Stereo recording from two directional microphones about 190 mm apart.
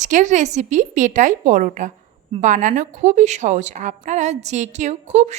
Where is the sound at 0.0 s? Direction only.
40° right (ahead or behind).